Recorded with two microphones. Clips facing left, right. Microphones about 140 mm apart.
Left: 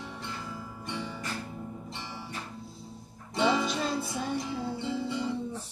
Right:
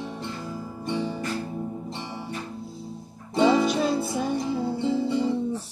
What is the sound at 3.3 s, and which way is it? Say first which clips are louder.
Music: right 7 dB; 25° right (ahead or behind).